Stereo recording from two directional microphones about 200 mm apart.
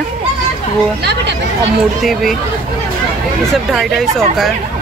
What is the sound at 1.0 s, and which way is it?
Speech, 55° right (ahead or behind).